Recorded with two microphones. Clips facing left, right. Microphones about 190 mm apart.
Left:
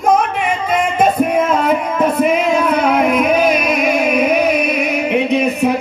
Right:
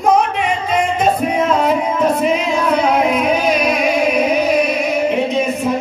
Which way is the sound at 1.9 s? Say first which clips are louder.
Left 1 dB; 55° left (ahead or behind).